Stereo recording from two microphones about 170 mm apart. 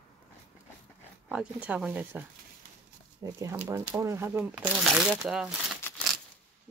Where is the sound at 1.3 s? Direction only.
10° right (ahead or behind).